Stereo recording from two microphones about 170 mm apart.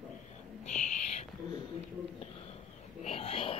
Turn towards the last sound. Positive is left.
turn(degrees=35)  # may be behind; listen again after turning